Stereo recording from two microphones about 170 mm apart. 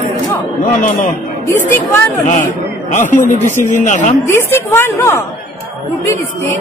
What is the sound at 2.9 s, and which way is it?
A man's voice, 45° left (ahead or behind).